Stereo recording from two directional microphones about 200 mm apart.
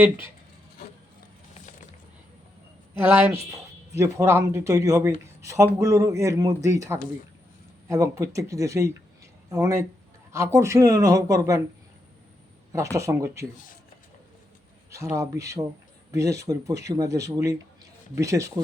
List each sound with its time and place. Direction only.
2.9 s speech: 10° right (ahead or behind)
13.0 s speech: 15° right (ahead or behind)
15.1 s speech: 15° right (ahead or behind)